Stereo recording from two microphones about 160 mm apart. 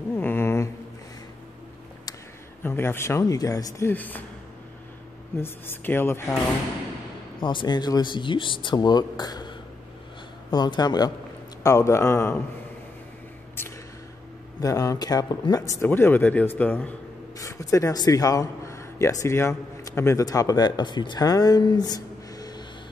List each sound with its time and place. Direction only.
0.1 s a sound: 15° left (ahead or behind)
2.6 s speech: 15° left (ahead or behind)
5.4 s speech: 15° left (ahead or behind)
7.3 s speech: 30° left (ahead or behind)
14.6 s speech: 20° left (ahead or behind)
17.4 s speech: 20° left (ahead or behind)